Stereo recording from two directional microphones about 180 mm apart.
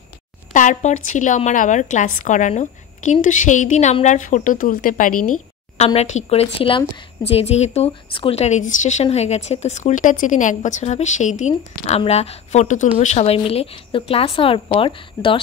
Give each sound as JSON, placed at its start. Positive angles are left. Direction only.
{"t": 0.5, "sound": "a woman's voice", "side_deg": 45}
{"t": 5.9, "sound": "a woman's voice", "side_deg": 35}